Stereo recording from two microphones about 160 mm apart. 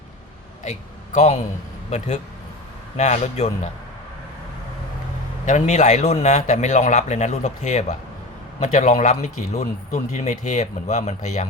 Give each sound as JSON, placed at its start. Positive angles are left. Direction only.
{"t": 0.6, "sound": "a man's voice", "side_deg": 45}
{"t": 3.0, "sound": "speech", "side_deg": 45}
{"t": 5.5, "sound": "speech", "side_deg": 50}